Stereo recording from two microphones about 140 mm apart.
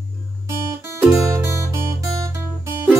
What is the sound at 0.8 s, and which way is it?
Music, 15° right (ahead or behind).